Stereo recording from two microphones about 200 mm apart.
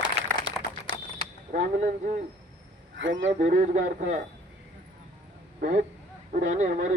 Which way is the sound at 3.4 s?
40° right (ahead or behind).